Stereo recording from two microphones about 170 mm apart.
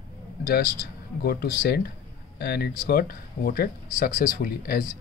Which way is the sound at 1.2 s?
65° left (ahead or behind).